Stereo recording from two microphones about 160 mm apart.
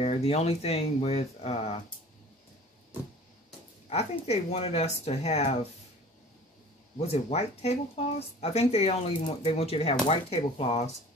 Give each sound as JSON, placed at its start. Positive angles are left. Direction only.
{"t": 0.0, "sound": "speech", "side_deg": 40}
{"t": 3.9, "sound": "speech", "side_deg": 40}
{"t": 7.0, "sound": "speech", "side_deg": 40}